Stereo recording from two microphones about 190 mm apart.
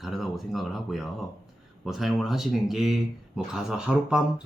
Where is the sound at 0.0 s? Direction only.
Centre (ahead or behind).